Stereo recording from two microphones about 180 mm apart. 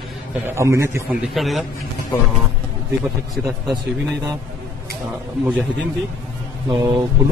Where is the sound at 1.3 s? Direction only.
Centre (ahead or behind).